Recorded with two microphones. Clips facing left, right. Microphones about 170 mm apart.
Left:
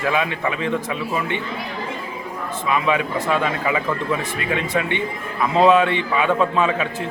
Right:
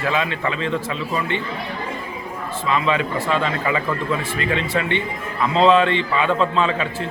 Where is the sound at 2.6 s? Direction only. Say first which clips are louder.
Even; 10° left (ahead or behind).